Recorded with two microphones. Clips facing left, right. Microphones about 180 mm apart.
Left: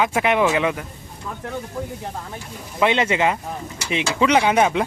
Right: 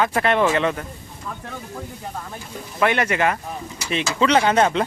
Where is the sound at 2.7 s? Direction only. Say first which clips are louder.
Left 1 dB; 20° left (ahead or behind).